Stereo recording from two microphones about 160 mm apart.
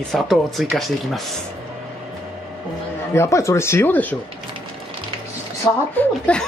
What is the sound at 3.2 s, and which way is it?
Speech, 20° left (ahead or behind).